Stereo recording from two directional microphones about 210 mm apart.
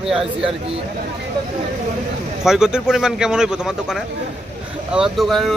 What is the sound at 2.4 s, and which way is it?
Speech, 5° right (ahead or behind).